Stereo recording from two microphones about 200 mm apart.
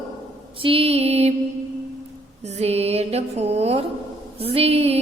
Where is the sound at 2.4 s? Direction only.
35° right (ahead or behind).